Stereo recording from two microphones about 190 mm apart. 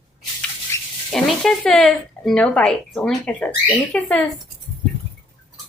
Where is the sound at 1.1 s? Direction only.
Centre (ahead or behind).